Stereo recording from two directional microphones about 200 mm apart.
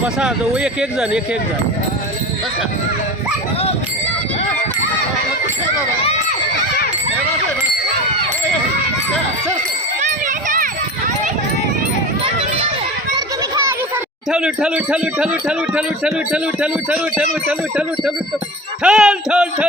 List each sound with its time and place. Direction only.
0.2 s speech: 5° right (ahead or behind)
10.0 s a sound: 40° right (ahead or behind)
13.7 s a child's voice: 5° right (ahead or behind)